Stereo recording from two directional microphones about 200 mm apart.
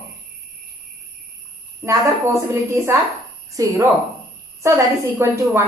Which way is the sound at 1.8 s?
15° right (ahead or behind).